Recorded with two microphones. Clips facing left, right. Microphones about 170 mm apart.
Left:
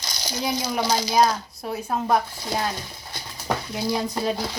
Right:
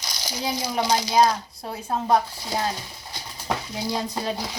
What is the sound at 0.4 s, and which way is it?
Speech, 25° right (ahead or behind).